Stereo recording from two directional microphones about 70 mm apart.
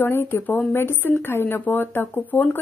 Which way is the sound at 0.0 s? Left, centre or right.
Left.